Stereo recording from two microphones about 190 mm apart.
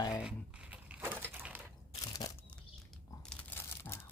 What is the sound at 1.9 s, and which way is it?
Crunch, 20° left (ahead or behind).